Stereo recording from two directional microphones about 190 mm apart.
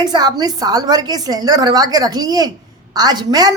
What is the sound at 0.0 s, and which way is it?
A woman's voice, 20° right (ahead or behind).